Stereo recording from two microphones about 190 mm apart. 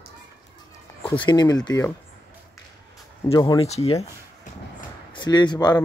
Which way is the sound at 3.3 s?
20° left (ahead or behind).